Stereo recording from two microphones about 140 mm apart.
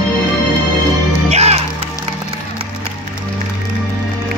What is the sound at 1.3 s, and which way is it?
Music, 50° right (ahead or behind).